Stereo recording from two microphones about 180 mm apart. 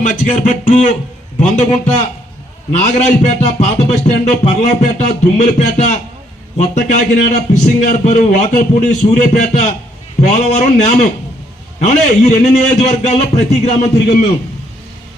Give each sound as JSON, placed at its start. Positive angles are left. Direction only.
{"t": 0.0, "sound": "speech", "side_deg": 45}
{"t": 2.7, "sound": "music", "side_deg": 40}